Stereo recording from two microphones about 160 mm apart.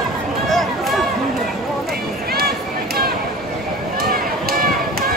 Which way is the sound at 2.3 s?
75° right (ahead or behind).